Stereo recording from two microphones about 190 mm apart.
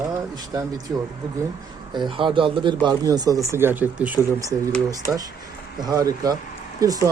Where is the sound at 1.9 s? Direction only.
25° right (ahead or behind).